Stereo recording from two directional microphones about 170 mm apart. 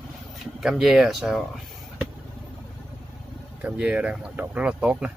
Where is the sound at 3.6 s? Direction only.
5° right (ahead or behind).